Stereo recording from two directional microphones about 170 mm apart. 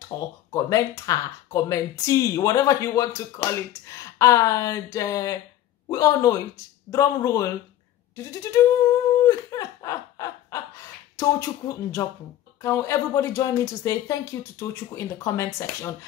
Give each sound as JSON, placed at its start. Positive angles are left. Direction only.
{"t": 0.1, "sound": "speech", "side_deg": 20}
{"t": 9.2, "sound": "a sound", "side_deg": 20}
{"t": 11.1, "sound": "speech", "side_deg": 20}